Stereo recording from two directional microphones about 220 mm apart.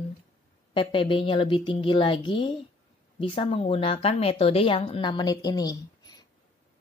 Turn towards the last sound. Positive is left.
turn(degrees=20)  # may be behind; listen again after turning